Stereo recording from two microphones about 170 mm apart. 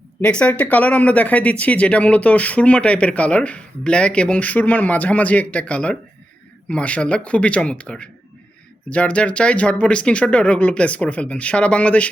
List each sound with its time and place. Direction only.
0.2 s speech: 5° left (ahead or behind)